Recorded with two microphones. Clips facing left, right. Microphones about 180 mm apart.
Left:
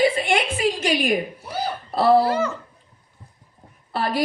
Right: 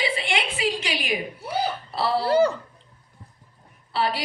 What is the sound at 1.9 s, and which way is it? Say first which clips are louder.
Speech: left 9 dB; 50° left (ahead or behind).